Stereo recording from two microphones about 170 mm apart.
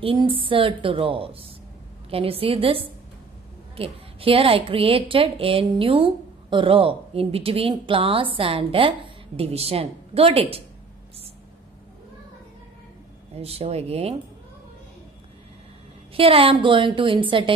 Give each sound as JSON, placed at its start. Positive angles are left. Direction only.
{"t": 0.0, "sound": "a woman's voice", "side_deg": -30}
{"t": 13.3, "sound": "a woman's voice", "side_deg": -35}
{"t": 16.2, "sound": "a woman's voice", "side_deg": -35}